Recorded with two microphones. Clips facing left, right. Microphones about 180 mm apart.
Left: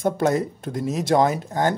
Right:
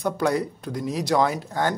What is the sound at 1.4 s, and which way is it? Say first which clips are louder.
Speech: left 3 dB; 20° left (ahead or behind).